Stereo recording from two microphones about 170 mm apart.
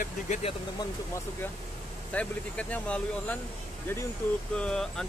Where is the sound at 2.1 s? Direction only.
10° left (ahead or behind).